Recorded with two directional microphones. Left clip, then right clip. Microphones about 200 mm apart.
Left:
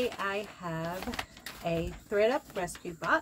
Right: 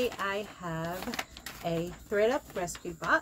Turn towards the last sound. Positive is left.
turn(degrees=0)  # may be behind; listen again after turning